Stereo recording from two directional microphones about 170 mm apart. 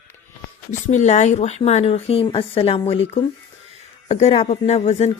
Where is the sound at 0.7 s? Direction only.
45° left (ahead or behind).